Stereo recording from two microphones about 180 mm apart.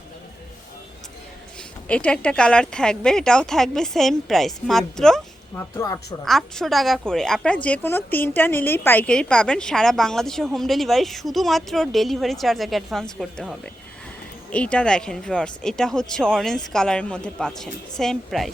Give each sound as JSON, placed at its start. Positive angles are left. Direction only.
{"t": 1.9, "sound": "a woman's voice", "side_deg": 5}
{"t": 5.7, "sound": "speech", "side_deg": 20}
{"t": 6.2, "sound": "a woman's voice", "side_deg": 0}